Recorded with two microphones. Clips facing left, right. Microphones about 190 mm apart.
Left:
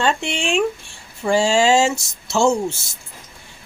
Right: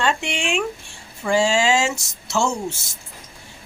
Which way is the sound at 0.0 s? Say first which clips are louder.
Left 2 dB; 30° left (ahead or behind).